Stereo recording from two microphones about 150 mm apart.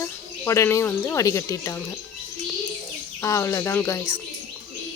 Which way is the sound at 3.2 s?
20° left (ahead or behind).